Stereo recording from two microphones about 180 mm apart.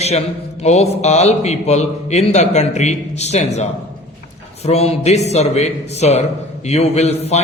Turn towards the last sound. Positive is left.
turn(degrees=35)  # may be behind; listen again after turning